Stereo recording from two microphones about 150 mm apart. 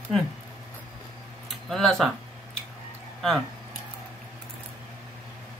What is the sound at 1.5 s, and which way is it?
Speech, centre (ahead or behind).